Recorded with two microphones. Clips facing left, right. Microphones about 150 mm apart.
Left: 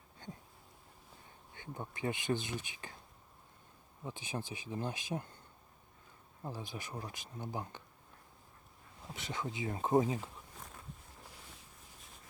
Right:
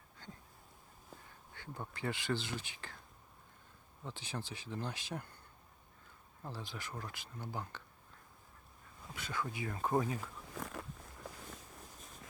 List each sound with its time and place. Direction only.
0.2 s a sound: 20° left (ahead or behind)
1.5 s speech: 20° left (ahead or behind)
4.0 s speech: 20° left (ahead or behind)
6.4 s speech: 15° left (ahead or behind)
9.1 s speech: 20° left (ahead or behind)
10.5 s a sound: 90° right